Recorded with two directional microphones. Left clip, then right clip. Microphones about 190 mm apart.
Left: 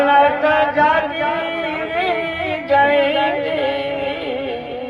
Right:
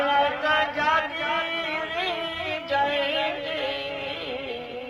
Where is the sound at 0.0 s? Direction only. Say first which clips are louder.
Left 9 dB; 15° right (ahead or behind).